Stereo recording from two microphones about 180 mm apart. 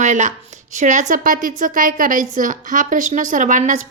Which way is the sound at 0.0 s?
40° right (ahead or behind).